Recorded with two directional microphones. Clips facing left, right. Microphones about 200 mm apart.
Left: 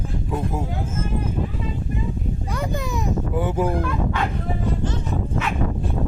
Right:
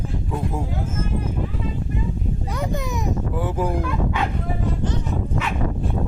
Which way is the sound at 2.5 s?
20° right (ahead or behind).